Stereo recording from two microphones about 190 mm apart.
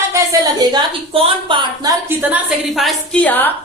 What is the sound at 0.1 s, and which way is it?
A woman's voice, 20° right (ahead or behind).